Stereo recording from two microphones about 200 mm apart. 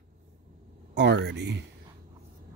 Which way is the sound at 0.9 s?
60° right (ahead or behind).